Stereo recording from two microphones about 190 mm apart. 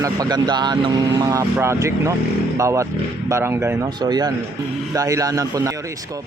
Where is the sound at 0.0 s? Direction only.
20° right (ahead or behind).